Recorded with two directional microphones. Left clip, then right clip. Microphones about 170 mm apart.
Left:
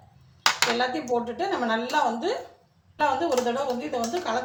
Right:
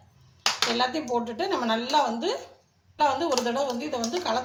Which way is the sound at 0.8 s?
15° right (ahead or behind).